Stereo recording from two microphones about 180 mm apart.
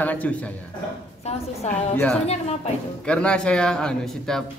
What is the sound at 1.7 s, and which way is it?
A man's voice, 10° left (ahead or behind).